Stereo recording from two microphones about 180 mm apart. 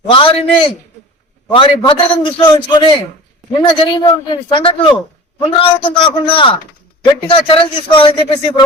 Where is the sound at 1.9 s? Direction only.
25° left (ahead or behind).